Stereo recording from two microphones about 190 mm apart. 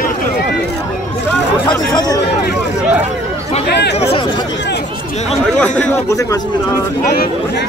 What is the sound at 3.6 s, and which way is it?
Speech, 60° left (ahead or behind).